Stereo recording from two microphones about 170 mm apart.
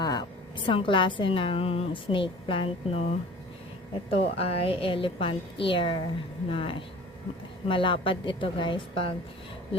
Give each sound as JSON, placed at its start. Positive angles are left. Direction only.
{"t": 0.0, "sound": "a woman's voice", "side_deg": 25}